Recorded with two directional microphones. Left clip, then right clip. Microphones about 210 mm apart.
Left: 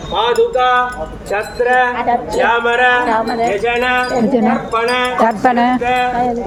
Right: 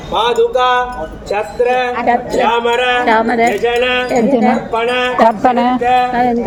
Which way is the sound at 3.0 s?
55° right (ahead or behind).